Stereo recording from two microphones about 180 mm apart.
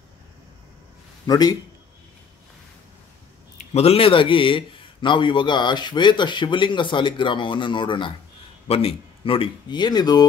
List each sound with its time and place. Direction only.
1.2 s a man's voice: 20° left (ahead or behind)
3.5 s a man's voice: 35° left (ahead or behind)